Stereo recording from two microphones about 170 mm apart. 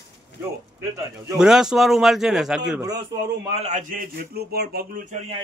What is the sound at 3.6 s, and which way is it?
Speech, 45° right (ahead or behind).